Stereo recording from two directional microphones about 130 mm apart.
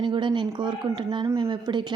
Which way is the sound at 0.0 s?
40° right (ahead or behind).